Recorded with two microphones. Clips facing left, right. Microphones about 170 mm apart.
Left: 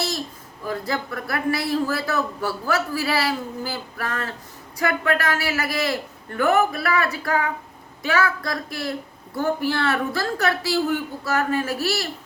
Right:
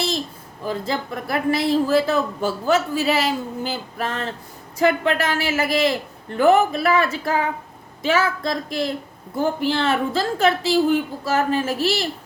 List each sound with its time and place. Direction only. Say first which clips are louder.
0.7 s a woman's voice: right 2 dB; 25° right (ahead or behind)